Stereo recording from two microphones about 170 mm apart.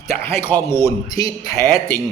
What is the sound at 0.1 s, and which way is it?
Speech, 15° left (ahead or behind).